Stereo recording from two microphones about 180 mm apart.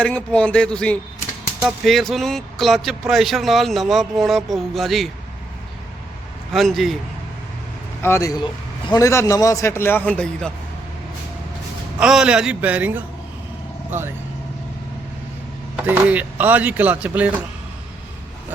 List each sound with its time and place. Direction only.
0.0 s speech: 5° left (ahead or behind)
6.5 s speech: centre (ahead or behind)
8.0 s a man's voice: 15° left (ahead or behind)
11.9 s speech: 5° right (ahead or behind)
15.7 s speech: 10° right (ahead or behind)